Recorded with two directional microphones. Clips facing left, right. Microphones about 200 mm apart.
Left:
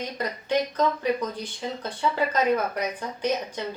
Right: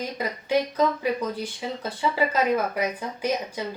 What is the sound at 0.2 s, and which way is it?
Speech, 10° right (ahead or behind).